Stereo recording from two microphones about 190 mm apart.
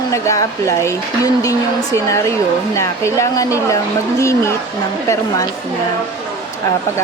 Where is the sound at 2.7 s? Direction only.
15° left (ahead or behind).